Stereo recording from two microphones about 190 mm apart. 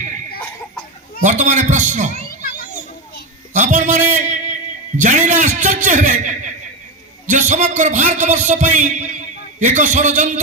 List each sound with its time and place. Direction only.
1.2 s a man's voice: 40° right (ahead or behind)
3.5 s a man's voice: 40° right (ahead or behind)